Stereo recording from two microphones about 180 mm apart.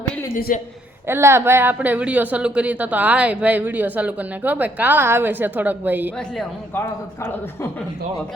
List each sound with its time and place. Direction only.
0.3 s a man's voice: 50° left (ahead or behind)
1.0 s speech: 15° right (ahead or behind)
6.1 s a man's voice: 5° left (ahead or behind)